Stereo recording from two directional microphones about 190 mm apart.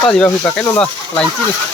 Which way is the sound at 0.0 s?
5° left (ahead or behind).